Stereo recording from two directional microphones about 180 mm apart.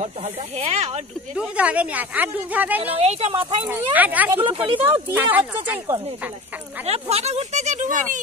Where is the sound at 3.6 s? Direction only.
10° right (ahead or behind).